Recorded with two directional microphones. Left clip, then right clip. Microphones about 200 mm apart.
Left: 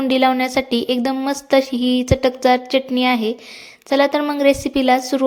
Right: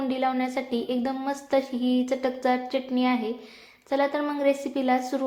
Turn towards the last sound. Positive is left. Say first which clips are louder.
# left 9 dB
turn(degrees=40)  # may be behind; listen again after turning